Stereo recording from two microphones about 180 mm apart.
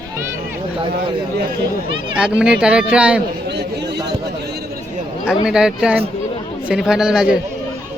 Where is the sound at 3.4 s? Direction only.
70° right (ahead or behind).